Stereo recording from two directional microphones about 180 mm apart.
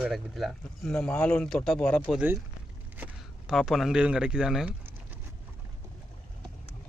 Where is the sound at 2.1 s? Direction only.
10° right (ahead or behind).